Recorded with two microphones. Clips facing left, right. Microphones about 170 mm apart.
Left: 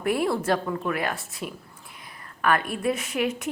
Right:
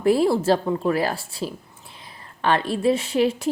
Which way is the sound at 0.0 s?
30° right (ahead or behind).